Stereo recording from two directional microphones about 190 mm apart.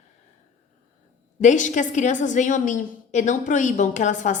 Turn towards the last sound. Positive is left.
turn(degrees=40)  # may be behind; listen again after turning